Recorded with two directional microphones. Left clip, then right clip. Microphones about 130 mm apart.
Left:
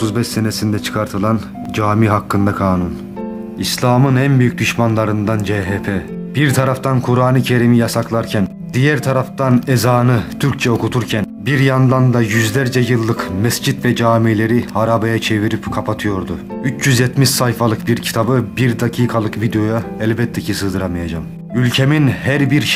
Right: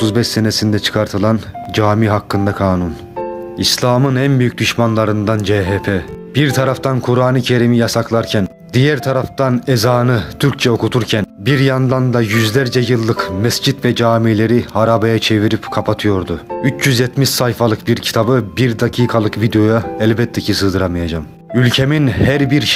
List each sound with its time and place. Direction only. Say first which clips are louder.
0.0 s speech: right 4 dB; 30° right (ahead or behind)